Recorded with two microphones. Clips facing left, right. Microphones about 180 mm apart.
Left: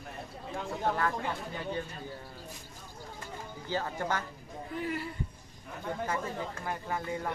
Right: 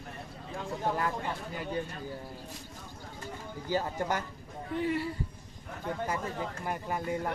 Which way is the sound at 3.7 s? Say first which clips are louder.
Right 2 dB; 15° right (ahead or behind).